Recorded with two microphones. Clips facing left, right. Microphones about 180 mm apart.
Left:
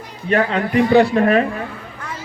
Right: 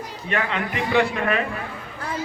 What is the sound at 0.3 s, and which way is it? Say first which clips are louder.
A man's voice: left 8 dB; 35° left (ahead or behind).